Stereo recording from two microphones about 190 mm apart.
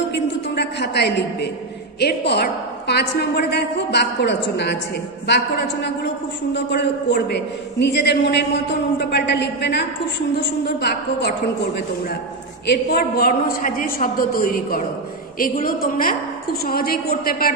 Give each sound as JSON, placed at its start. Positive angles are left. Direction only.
{"t": 0.1, "sound": "a sound", "side_deg": 65}
{"t": 2.0, "sound": "a woman's voice", "side_deg": 60}
{"t": 12.6, "sound": "a woman's voice", "side_deg": 55}